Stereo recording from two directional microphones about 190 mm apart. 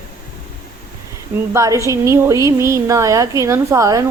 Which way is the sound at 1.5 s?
15° right (ahead or behind).